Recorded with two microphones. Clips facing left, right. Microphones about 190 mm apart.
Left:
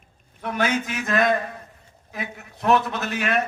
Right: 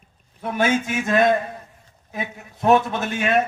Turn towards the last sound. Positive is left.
turn(degrees=-25)  # may be behind; listen again after turning